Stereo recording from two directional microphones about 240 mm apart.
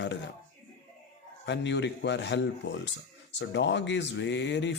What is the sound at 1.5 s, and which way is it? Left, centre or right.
Speech, left.